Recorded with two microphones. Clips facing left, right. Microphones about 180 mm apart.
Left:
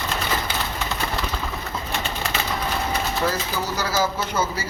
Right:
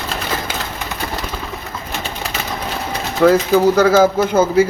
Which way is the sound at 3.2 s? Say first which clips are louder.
Right 19 dB; 55° right (ahead or behind).